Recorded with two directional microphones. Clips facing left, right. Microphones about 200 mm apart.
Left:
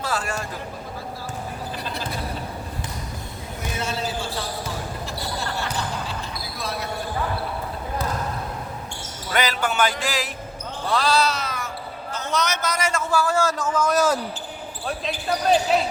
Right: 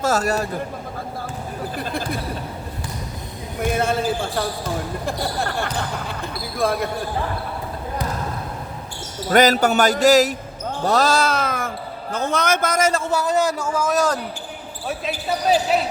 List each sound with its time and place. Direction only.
0.0 s a man's voice: 40° right (ahead or behind)
1.7 s a sound: 50° right (ahead or behind)
3.8 s a man's voice: 55° right (ahead or behind)
9.3 s a man's voice: 40° right (ahead or behind)
13.0 s a man's voice: 20° right (ahead or behind)
13.9 s speech: 5° left (ahead or behind)
14.8 s speech: 5° right (ahead or behind)